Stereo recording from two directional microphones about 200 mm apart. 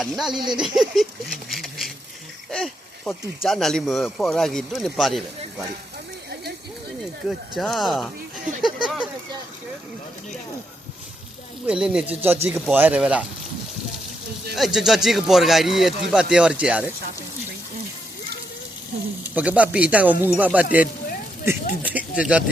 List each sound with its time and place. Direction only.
0.0 s speech: centre (ahead or behind)
0.3 s speech: 20° right (ahead or behind)
0.6 s a sound: centre (ahead or behind)
2.5 s speech: 5° left (ahead or behind)
7.0 s speech: centre (ahead or behind)
11.6 s speech: 5° right (ahead or behind)
14.5 s speech: centre (ahead or behind)
19.3 s speech: 5° right (ahead or behind)
21.8 s speech: 5° right (ahead or behind)